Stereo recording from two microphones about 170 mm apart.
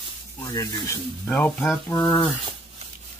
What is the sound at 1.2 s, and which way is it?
Speech, 5° left (ahead or behind).